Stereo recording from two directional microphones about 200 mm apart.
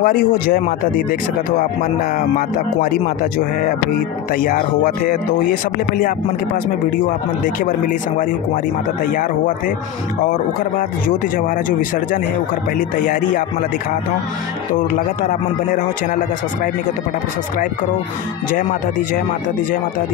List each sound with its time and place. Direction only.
0.0 s a man's voice: 45° left (ahead or behind)
12.7 s a man's voice: 40° left (ahead or behind)
18.5 s a man's voice: 40° left (ahead or behind)